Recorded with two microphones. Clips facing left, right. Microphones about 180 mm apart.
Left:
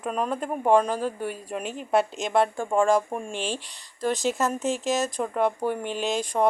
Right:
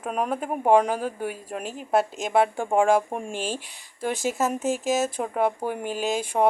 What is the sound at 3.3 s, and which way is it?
Speech, 45° right (ahead or behind).